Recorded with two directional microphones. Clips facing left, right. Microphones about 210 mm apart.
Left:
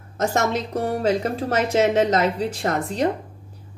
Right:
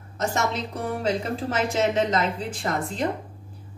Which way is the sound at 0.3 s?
45° left (ahead or behind).